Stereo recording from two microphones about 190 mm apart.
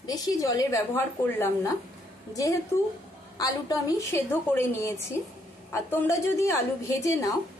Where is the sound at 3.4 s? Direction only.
20° left (ahead or behind).